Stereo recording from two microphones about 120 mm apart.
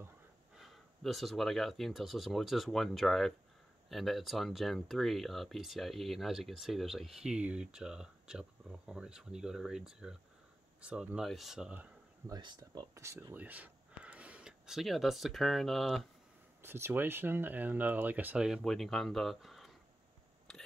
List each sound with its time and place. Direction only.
0.6 s speech: centre (ahead or behind)
12.3 s speech: 35° right (ahead or behind)
12.9 s speech: 25° right (ahead or behind); by 16.1 s centre (ahead or behind)
16.6 s speech: 20° right (ahead or behind); by 19.7 s centre (ahead or behind)